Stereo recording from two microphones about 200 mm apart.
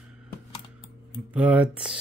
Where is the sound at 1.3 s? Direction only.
5° right (ahead or behind).